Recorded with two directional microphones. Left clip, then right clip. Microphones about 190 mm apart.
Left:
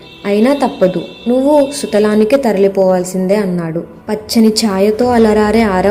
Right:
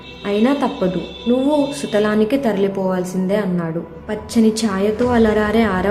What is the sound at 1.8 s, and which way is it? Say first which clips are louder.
A woman's voice: left 5 dB; 25° left (ahead or behind).